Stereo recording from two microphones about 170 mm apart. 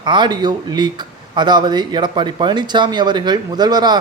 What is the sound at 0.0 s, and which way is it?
Speech, 25° right (ahead or behind).